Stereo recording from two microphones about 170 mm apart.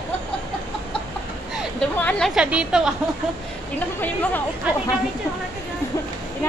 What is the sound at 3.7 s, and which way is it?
Speech, 10° left (ahead or behind).